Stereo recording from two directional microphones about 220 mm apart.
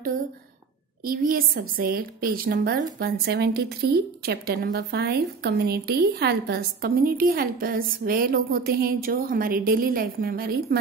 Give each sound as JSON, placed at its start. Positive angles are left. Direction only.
{"t": 1.0, "sound": "a woman's voice", "side_deg": -40}